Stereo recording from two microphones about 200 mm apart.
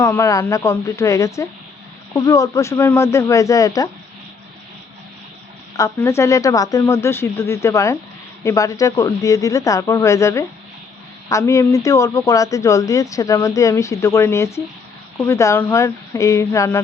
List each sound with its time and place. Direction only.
0.0 s a man's voice: 15° left (ahead or behind)
5.7 s a man's voice: 15° left (ahead or behind)